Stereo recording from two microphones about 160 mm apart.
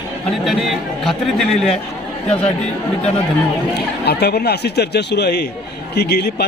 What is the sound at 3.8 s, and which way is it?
A man's voice, 90° left.